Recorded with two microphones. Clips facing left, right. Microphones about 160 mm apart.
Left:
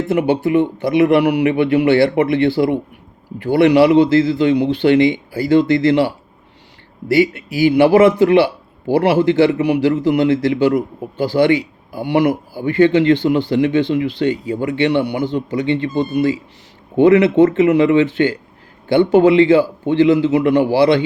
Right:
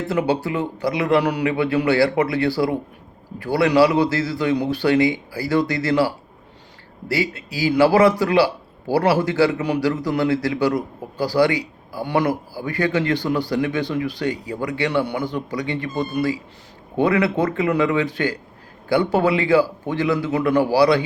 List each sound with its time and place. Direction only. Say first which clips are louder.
0.1 s a man's voice: left 6 dB; 20° left (ahead or behind)